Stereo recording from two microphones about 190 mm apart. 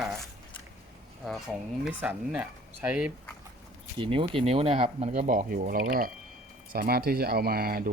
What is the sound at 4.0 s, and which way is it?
Speech, 30° right (ahead or behind).